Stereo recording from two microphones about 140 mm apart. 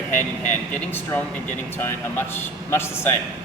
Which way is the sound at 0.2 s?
15° left (ahead or behind).